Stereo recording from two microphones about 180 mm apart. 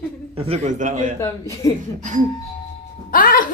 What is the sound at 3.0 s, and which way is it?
Music, 50° left (ahead or behind).